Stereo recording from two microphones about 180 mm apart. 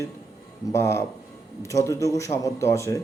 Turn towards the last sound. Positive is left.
turn(degrees=15)  # may be behind; listen again after turning